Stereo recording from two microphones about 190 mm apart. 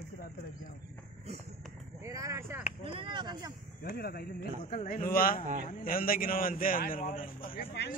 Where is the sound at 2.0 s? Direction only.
15° right (ahead or behind).